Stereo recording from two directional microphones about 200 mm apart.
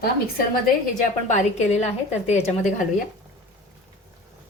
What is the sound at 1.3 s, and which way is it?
Speech, 30° left (ahead or behind).